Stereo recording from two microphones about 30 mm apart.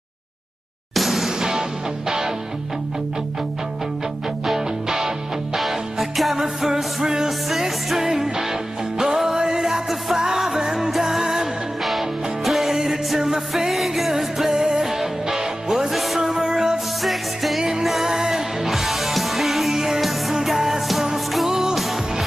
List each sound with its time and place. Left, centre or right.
0.9 s music: centre
4.8 s music: centre
5.6 s music: centre
9.3 s music: right
9.6 s music: centre
12.4 s music: centre
14.6 s music: centre
15.9 s music: centre
16.5 s music: centre
17.0 s music: centre
18.7 s music: centre